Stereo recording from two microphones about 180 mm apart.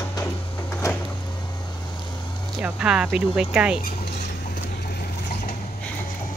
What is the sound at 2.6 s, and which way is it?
Speech, 5° right (ahead or behind).